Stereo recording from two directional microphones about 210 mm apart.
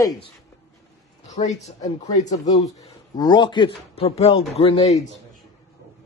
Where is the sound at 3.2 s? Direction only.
20° left (ahead or behind).